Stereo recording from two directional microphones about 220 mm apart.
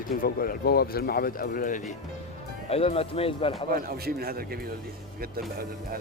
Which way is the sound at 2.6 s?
25° left (ahead or behind).